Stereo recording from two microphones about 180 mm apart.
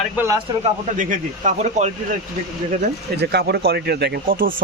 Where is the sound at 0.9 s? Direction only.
45° right (ahead or behind).